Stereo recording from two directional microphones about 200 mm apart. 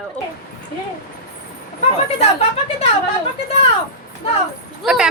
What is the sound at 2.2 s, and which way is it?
Speech, 30° left (ahead or behind).